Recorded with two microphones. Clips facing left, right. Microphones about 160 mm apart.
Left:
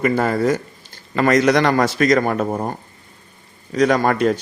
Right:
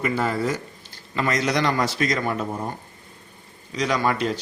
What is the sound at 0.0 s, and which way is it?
A man's voice, 50° left (ahead or behind).